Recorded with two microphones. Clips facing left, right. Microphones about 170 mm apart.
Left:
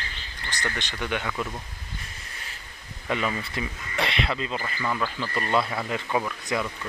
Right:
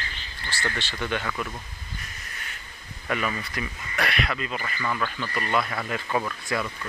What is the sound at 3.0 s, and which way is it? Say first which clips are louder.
Speech: left 1 dB; 20° left (ahead or behind).